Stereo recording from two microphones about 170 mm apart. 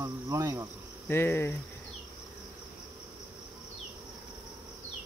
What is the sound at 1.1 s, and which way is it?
Speech, 15° left (ahead or behind).